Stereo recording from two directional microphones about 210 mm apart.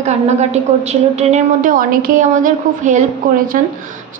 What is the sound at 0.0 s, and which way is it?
A woman's voice, 30° right (ahead or behind).